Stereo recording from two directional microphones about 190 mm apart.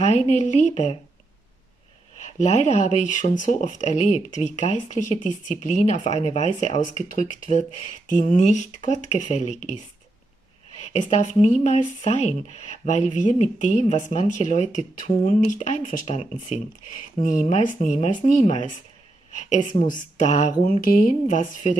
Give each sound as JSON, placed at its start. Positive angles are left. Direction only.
{"t": 0.0, "sound": "speech", "side_deg": 35}
{"t": 2.1, "sound": "speech", "side_deg": 35}
{"t": 10.8, "sound": "speech", "side_deg": 35}